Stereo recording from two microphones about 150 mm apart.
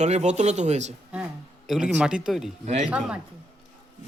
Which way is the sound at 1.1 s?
5° right (ahead or behind).